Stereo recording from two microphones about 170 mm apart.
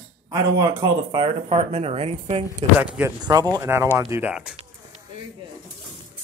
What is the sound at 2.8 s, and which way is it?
Speech, 10° right (ahead or behind).